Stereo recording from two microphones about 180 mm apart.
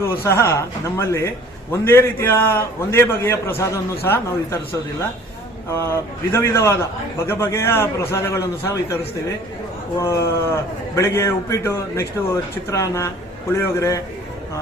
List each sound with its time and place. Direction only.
0.0 s a man's voice: 15° left (ahead or behind)
5.6 s a man's voice: 15° left (ahead or behind)
10.0 s a man's voice: 15° left (ahead or behind)